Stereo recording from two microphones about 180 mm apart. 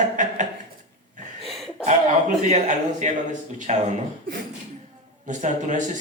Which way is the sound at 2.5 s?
40° right (ahead or behind).